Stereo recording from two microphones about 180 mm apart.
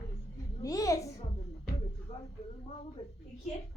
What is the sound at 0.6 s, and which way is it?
Speech, 20° left (ahead or behind).